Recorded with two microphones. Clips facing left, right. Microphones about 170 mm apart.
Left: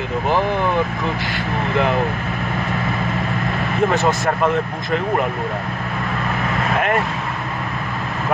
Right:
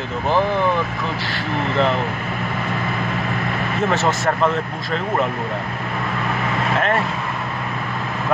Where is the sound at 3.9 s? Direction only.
15° left (ahead or behind).